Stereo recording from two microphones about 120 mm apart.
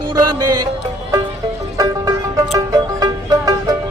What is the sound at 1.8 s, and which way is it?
Music, 35° right (ahead or behind).